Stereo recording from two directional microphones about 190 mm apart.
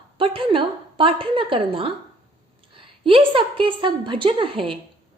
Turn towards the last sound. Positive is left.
turn(degrees=-30)  # may be behind; listen again after turning